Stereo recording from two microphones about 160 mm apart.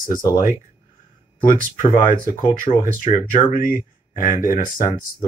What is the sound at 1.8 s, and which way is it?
Speech, 60° left (ahead or behind).